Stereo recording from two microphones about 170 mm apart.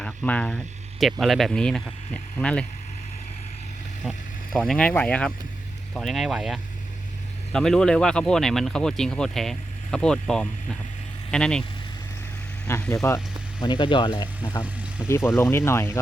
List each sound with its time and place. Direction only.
0.0 s speech: 10° left (ahead or behind)
4.0 s speech: centre (ahead or behind)
12.6 s speech: 15° left (ahead or behind)
15.0 s speech: 15° left (ahead or behind)